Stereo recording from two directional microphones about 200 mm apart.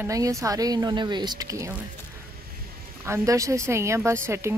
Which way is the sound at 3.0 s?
15° right (ahead or behind).